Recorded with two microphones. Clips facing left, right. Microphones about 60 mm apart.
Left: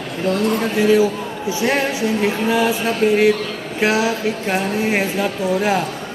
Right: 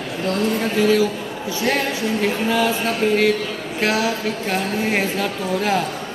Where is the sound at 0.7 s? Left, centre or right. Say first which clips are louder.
Left 3 dB; centre.